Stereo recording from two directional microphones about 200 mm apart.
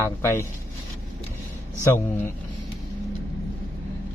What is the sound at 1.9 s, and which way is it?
Speech, 10° left (ahead or behind).